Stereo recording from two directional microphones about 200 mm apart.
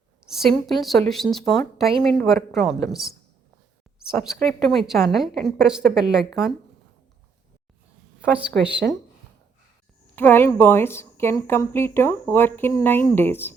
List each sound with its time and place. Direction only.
0.3 s a woman's voice: centre (ahead or behind)
8.2 s a woman's voice: 5° right (ahead or behind)
10.2 s a woman's voice: 10° left (ahead or behind)